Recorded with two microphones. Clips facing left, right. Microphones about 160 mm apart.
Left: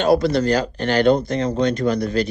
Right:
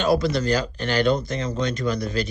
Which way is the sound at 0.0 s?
60° left (ahead or behind).